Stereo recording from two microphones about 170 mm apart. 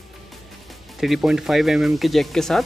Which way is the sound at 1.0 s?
Centre (ahead or behind).